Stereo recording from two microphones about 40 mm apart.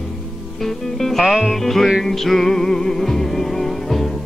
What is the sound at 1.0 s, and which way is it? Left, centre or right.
Music, centre.